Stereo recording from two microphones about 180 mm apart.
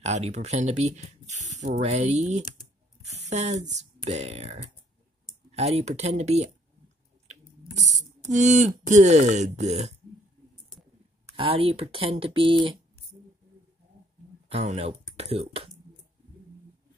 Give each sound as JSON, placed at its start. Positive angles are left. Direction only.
{"t": 0.0, "sound": "speech", "side_deg": -35}
{"t": 5.6, "sound": "speech", "side_deg": -35}
{"t": 7.7, "sound": "speech", "side_deg": -40}
{"t": 11.3, "sound": "speech", "side_deg": -30}
{"t": 14.5, "sound": "speech", "side_deg": -35}